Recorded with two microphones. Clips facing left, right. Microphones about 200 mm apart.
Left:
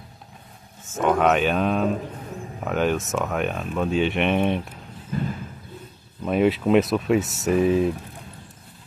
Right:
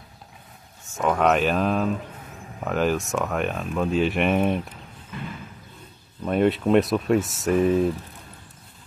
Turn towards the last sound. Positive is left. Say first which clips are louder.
# even
turn(degrees=0)  # may be behind; listen again after turning